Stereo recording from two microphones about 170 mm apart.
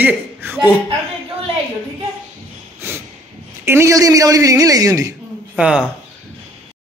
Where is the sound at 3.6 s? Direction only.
15° right (ahead or behind).